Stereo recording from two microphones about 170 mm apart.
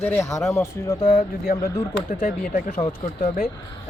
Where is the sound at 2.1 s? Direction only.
55° left (ahead or behind).